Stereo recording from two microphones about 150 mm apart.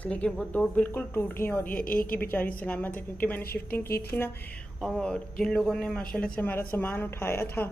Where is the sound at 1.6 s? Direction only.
70° left (ahead or behind).